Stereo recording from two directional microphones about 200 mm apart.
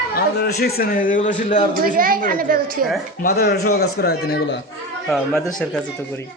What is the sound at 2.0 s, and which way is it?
Speech, 45° right (ahead or behind).